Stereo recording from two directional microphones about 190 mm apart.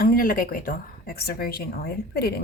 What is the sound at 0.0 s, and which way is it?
Speech, 50° left (ahead or behind).